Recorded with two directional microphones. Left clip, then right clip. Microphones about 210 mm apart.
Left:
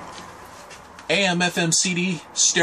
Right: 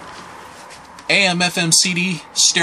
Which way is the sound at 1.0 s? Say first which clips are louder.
Right 5 dB; 15° right (ahead or behind).